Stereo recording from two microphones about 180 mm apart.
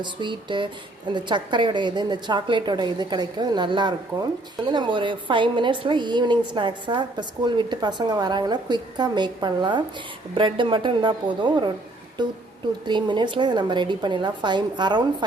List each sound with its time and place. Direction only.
0.0 s a woman's voice: 25° right (ahead or behind)
12.8 s a woman's voice: 25° right (ahead or behind)